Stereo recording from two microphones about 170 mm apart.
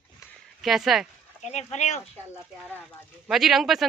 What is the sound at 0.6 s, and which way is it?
Speech, centre (ahead or behind).